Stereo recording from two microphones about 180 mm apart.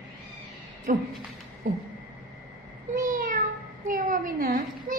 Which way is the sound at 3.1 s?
50° right (ahead or behind).